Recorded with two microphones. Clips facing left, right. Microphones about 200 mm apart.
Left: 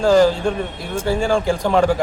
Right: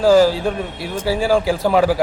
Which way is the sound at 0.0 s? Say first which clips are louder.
Right 1 dB; 5° right (ahead or behind).